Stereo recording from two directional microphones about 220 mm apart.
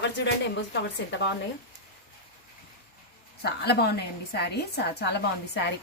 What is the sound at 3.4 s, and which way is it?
Speech, 45° left (ahead or behind).